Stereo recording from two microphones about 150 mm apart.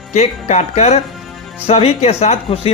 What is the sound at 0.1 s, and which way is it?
Speech, 50° left (ahead or behind).